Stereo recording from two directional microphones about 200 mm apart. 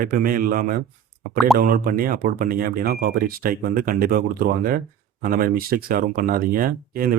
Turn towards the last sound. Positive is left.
turn(degrees=-45)  # may be behind; listen again after turning